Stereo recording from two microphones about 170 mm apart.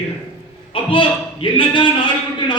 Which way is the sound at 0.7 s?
30° left (ahead or behind).